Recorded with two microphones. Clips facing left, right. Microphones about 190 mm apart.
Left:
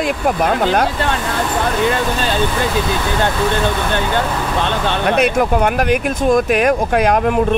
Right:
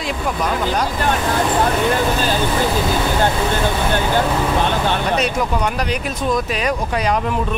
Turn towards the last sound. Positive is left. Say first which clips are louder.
# left 5 dB
turn(degrees=55)  # may be behind; listen again after turning